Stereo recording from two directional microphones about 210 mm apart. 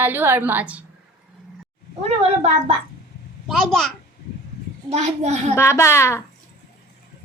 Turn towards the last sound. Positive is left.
turn(degrees=15)  # may be behind; listen again after turning